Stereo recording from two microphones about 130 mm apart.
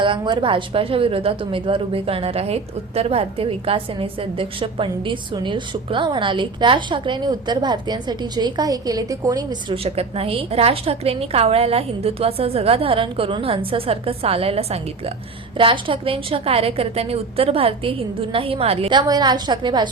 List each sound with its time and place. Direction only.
0.0 s a woman's voice: 40° right (ahead or behind)
9.7 s a woman's voice: 50° right (ahead or behind)
18.9 s a woman's voice: 30° right (ahead or behind)